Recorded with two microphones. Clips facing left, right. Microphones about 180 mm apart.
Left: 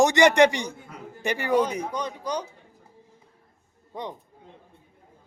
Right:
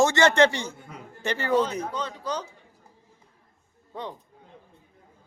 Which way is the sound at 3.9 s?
15° left (ahead or behind).